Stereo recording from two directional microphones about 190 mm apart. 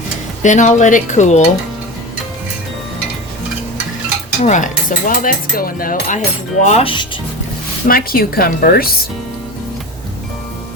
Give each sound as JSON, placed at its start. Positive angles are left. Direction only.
{"t": 0.4, "sound": "cutlery", "side_deg": 40}
{"t": 4.4, "sound": "cutlery", "side_deg": 40}
{"t": 7.9, "sound": "speech", "side_deg": 50}